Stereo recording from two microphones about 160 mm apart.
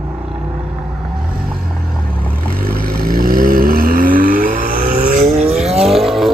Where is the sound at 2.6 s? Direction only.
70° right (ahead or behind).